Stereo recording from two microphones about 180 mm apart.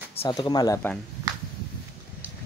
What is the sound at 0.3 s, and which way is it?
Speech, 25° left (ahead or behind).